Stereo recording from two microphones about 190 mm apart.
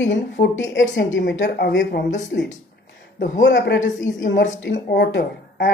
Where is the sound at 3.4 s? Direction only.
70° left (ahead or behind).